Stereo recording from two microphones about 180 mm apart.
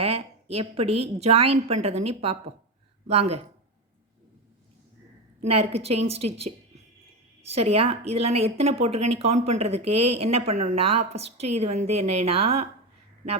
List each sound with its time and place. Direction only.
0.0 s a woman's voice: 35° right (ahead or behind)
5.4 s a woman's voice: 35° right (ahead or behind)